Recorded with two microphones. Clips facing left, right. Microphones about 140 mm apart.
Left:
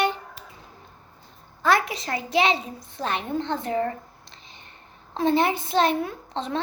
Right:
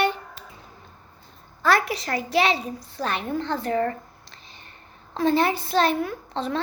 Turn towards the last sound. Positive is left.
turn(degrees=20)  # may be behind; listen again after turning